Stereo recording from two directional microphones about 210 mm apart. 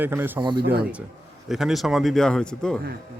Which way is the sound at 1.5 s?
Centre (ahead or behind).